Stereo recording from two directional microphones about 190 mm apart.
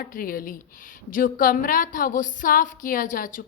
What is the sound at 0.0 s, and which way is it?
A woman's voice, 50° left (ahead or behind).